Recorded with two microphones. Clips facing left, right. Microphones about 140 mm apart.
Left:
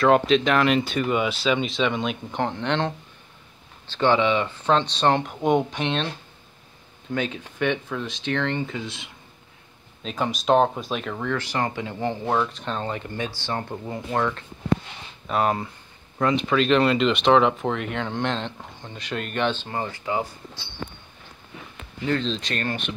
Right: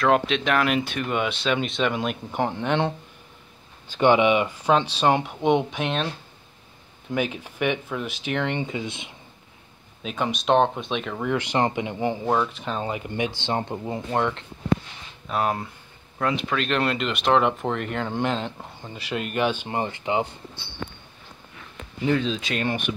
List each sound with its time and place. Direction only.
0.0 s speech: centre (ahead or behind)
3.9 s speech: 15° right (ahead or behind)
7.1 s speech: 10° right (ahead or behind)
10.0 s speech: centre (ahead or behind)
11.2 s speech: 20° right (ahead or behind)
12.3 s speech: 5° right (ahead or behind); by 14.4 s 20° right (ahead or behind)
15.2 s speech: centre (ahead or behind); by 20.2 s 20° right (ahead or behind)
22.0 s speech: 10° right (ahead or behind)